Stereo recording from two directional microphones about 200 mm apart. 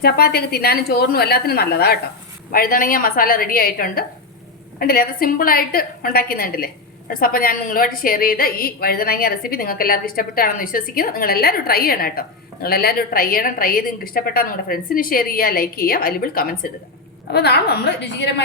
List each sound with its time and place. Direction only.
0.0 s a woman's voice: 50° left (ahead or behind)